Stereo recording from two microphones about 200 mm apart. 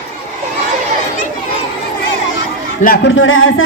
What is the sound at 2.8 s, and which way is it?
Speech, 55° left (ahead or behind).